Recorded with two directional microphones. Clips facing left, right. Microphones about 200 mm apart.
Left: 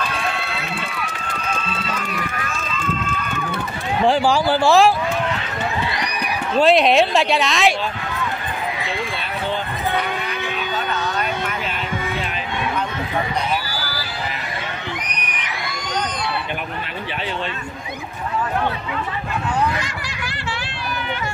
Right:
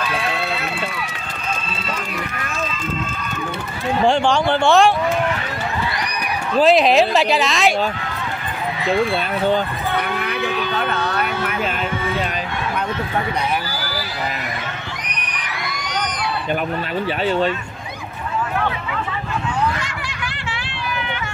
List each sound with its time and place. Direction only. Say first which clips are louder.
4.0 s speech: even; 5° left (ahead or behind)
6.6 s speech: right 1 dB; centre (ahead or behind)
10.4 s a sound: right 5 dB; 60° right (ahead or behind)